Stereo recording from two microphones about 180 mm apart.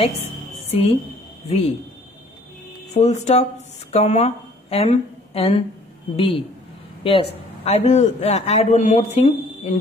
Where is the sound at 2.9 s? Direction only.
40° left (ahead or behind).